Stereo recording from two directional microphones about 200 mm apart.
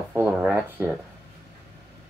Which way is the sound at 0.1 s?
10° right (ahead or behind).